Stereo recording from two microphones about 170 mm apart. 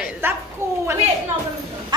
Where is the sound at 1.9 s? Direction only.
25° right (ahead or behind).